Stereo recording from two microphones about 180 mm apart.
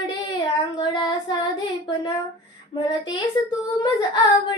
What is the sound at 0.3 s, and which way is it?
Child singing, 25° left (ahead or behind).